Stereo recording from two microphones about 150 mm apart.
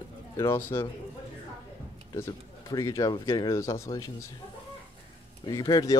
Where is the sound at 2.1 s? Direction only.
20° left (ahead or behind).